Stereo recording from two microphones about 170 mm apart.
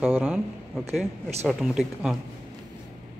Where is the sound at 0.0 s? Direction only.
10° right (ahead or behind).